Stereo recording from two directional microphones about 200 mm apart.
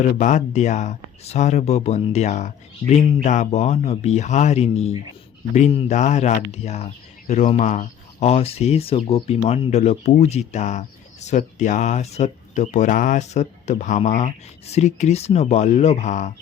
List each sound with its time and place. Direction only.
0.2 s speech: 35° left (ahead or behind)